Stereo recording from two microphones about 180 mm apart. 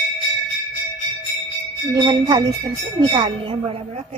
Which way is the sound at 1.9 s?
20° right (ahead or behind).